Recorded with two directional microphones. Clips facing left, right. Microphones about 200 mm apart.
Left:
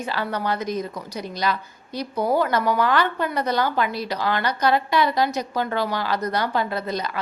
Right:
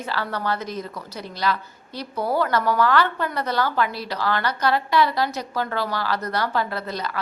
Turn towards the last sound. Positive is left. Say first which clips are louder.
# left 2 dB
turn(degrees=15)  # may be behind; listen again after turning